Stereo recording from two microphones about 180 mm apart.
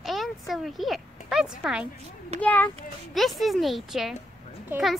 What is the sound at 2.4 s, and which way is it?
A child's voice, 10° left (ahead or behind).